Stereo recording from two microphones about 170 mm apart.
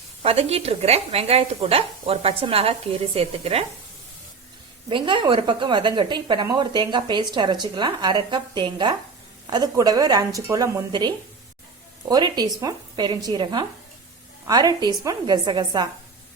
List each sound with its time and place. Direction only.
0.2 s speech: 35° right (ahead or behind)
4.9 s a woman's voice: 30° right (ahead or behind)